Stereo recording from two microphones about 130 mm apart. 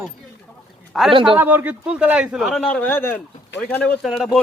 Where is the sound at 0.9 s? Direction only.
Centre (ahead or behind).